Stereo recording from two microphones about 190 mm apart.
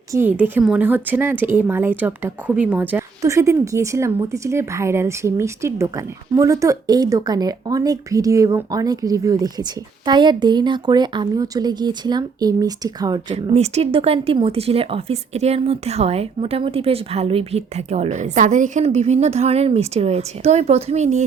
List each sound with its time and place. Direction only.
0.1 s a woman's voice: 10° right (ahead or behind)
13.3 s speech: 35° right (ahead or behind)